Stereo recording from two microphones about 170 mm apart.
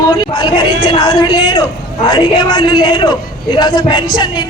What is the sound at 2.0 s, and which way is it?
A man's voice, 25° left (ahead or behind).